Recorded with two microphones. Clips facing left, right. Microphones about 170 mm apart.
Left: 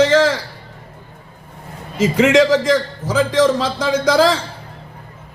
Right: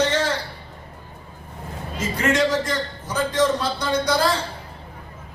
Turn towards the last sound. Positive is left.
turn(degrees=90)